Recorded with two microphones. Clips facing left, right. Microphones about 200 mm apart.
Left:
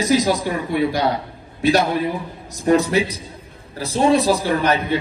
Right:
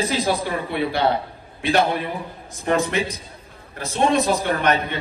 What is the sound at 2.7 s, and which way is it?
A man's voice, 35° left (ahead or behind).